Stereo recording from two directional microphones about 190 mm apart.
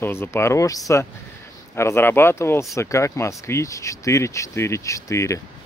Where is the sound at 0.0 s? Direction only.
10° left (ahead or behind).